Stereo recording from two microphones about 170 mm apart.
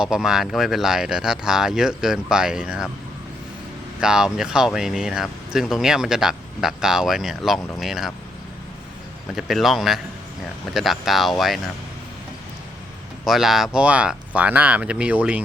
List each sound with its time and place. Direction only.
0.0 s speech: 5° right (ahead or behind)
4.0 s speech: 5° right (ahead or behind)
9.3 s speech: centre (ahead or behind)
13.2 s speech: centre (ahead or behind)